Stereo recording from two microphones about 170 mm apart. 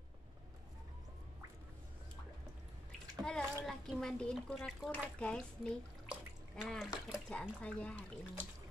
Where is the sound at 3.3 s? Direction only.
5° left (ahead or behind).